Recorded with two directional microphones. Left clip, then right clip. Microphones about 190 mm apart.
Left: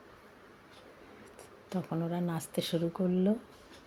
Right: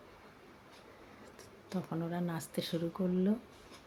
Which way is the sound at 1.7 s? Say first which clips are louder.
Left 3 dB; 5° left (ahead or behind).